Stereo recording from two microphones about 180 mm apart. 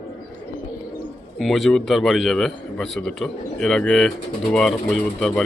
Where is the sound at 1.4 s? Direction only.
Centre (ahead or behind).